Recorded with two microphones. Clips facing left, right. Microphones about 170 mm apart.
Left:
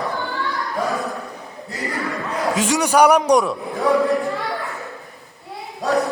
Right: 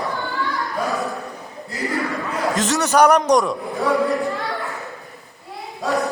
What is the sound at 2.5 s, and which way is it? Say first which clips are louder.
A man's voice: left 1 dB; 10° left (ahead or behind).